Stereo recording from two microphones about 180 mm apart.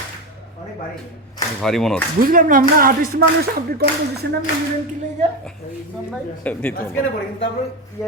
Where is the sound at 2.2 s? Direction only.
50° right (ahead or behind).